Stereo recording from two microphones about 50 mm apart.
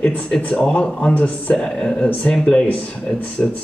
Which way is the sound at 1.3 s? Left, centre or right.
Centre.